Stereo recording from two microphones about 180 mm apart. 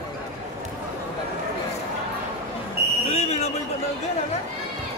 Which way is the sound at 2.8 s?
60° right (ahead or behind).